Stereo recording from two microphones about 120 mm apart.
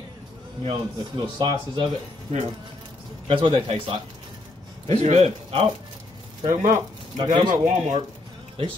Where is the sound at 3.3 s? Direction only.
45° right (ahead or behind).